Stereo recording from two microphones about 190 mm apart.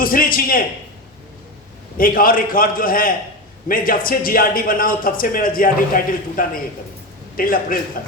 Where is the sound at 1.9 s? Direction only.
50° left (ahead or behind).